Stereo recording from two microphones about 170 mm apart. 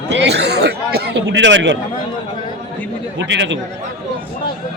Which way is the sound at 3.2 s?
90° right.